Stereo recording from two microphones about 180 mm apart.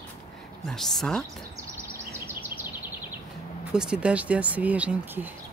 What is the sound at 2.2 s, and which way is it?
Bird vocalization, 10° right (ahead or behind).